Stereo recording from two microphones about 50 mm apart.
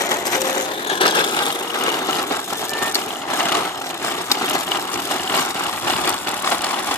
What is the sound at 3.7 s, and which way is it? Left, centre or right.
Vehicle, left.